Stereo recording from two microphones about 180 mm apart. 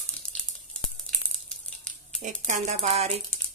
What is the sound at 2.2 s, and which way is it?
Speech, 45° right (ahead or behind).